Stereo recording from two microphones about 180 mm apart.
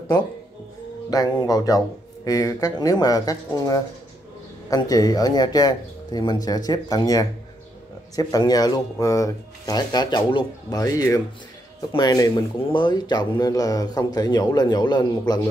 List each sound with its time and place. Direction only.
1.1 s speech: 20° left (ahead or behind)